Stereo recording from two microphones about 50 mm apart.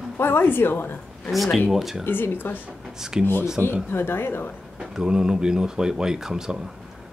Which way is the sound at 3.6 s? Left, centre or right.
Right.